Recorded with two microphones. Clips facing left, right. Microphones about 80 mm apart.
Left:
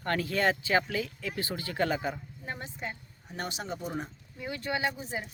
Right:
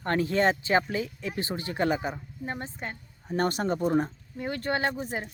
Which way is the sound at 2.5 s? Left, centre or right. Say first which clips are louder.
Right 2 dB; right.